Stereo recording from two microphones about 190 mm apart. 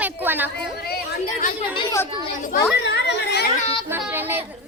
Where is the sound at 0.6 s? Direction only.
55° left (ahead or behind).